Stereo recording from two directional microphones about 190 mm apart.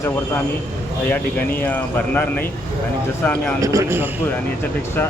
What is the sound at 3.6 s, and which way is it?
Speech, 15° right (ahead or behind).